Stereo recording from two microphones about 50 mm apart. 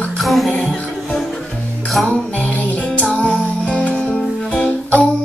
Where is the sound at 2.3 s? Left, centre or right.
Left.